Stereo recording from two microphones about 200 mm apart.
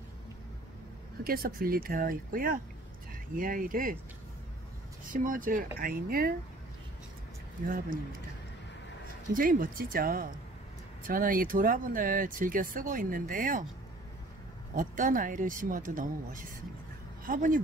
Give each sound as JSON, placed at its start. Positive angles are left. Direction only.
{"t": 1.2, "sound": "speech", "side_deg": -45}
{"t": 5.1, "sound": "speech", "side_deg": -40}
{"t": 7.6, "sound": "speech", "side_deg": -45}
{"t": 9.3, "sound": "speech", "side_deg": -45}
{"t": 14.8, "sound": "speech", "side_deg": -40}